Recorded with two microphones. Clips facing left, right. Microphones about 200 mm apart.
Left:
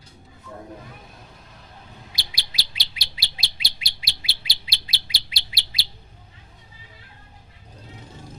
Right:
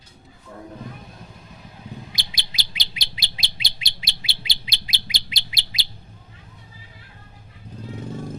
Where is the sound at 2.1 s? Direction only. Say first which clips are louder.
Right 3 dB; 20° right (ahead or behind).